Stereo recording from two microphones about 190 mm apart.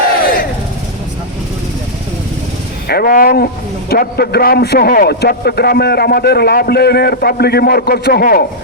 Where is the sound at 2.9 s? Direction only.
50° left (ahead or behind).